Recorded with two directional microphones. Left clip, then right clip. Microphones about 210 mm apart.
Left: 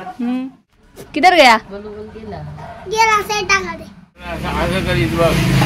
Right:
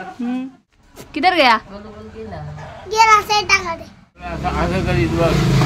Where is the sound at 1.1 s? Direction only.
20° left (ahead or behind).